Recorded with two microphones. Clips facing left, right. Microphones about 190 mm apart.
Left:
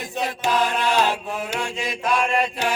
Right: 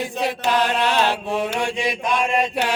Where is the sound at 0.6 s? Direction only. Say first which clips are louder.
Even; 70° right (ahead or behind).